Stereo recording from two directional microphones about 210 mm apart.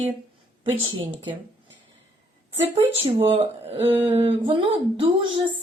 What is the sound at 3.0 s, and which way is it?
Speech, 25° right (ahead or behind).